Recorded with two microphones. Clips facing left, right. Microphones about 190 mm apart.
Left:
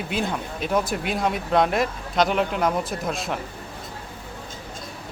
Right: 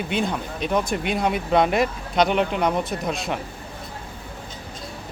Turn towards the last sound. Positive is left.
turn(degrees=0)  # may be behind; listen again after turning